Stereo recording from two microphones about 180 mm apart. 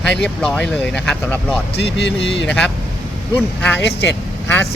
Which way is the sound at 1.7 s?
70° left (ahead or behind).